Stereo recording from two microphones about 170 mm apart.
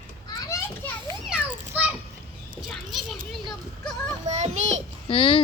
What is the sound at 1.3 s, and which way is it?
Children playing, 5° right (ahead or behind).